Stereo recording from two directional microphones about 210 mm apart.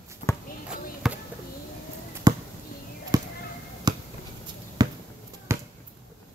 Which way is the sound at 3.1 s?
15° right (ahead or behind).